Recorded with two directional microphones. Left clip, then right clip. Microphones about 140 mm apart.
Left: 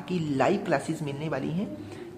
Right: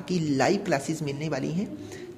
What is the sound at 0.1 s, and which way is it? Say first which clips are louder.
A woman's voice: right 1 dB; 25° right (ahead or behind).